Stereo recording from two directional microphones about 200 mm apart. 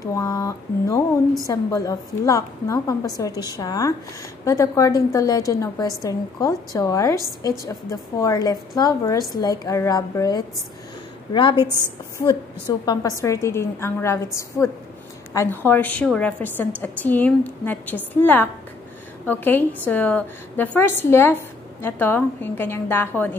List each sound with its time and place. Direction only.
0.0 s a woman's voice: 15° left (ahead or behind)
12.3 s a woman's voice: 20° left (ahead or behind)